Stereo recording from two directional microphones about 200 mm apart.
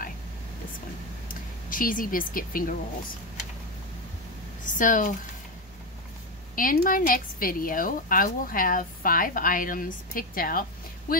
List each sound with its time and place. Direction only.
1.3 s speech: 45° left (ahead or behind)
4.6 s speech: 40° left (ahead or behind)
6.5 s a woman's voice: 45° left (ahead or behind)